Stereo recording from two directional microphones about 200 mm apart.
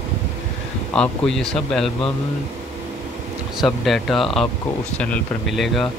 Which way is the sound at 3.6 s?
Centre (ahead or behind).